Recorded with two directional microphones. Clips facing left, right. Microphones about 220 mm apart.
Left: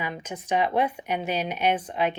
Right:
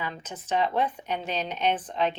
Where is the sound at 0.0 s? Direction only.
10° left (ahead or behind).